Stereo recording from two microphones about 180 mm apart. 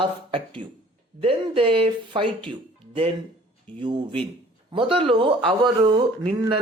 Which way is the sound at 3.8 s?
25° right (ahead or behind).